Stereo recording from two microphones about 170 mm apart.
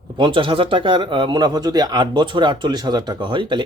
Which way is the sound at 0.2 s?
30° right (ahead or behind).